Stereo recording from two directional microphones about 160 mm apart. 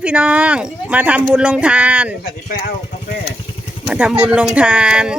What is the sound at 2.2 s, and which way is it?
Speech, 75° left (ahead or behind).